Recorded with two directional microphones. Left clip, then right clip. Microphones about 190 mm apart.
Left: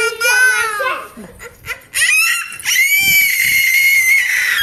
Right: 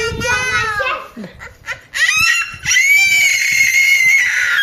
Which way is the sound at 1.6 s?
10° right (ahead or behind).